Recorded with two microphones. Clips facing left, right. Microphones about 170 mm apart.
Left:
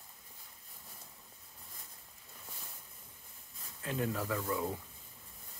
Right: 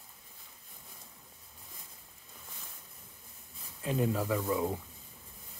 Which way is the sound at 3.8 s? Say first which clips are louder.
Right 5 dB; 20° right (ahead or behind).